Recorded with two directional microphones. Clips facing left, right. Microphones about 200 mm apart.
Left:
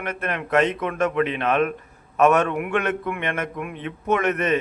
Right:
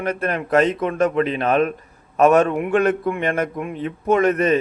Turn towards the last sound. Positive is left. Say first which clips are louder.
# right 5 dB
turn(degrees=-35)  # may be behind; listen again after turning